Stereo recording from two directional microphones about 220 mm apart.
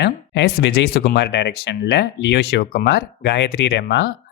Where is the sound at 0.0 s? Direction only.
50° left (ahead or behind).